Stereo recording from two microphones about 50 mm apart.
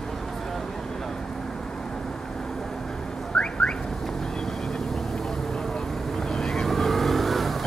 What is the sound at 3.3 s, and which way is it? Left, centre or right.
Car alarm, centre.